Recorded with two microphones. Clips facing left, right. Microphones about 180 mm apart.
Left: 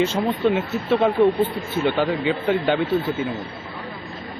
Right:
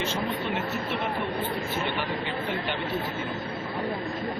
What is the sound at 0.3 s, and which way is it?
Speech, 75° left (ahead or behind).